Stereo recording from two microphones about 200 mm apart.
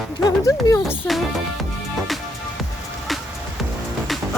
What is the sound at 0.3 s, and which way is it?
Speech, 15° left (ahead or behind).